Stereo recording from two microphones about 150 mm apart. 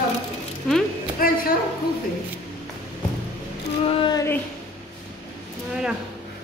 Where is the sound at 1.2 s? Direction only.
75° left (ahead or behind).